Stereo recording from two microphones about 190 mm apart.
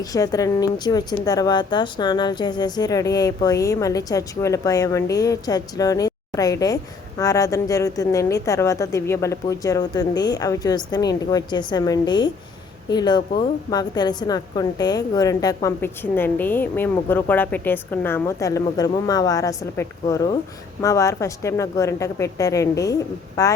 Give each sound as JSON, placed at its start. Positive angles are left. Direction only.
{"t": 0.0, "sound": "a woman's voice", "side_deg": 20}